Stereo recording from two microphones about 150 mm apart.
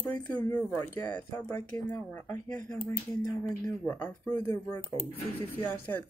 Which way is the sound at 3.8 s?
10° left (ahead or behind).